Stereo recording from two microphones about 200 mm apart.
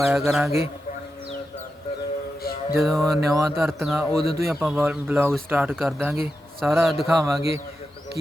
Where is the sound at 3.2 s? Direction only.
15° right (ahead or behind).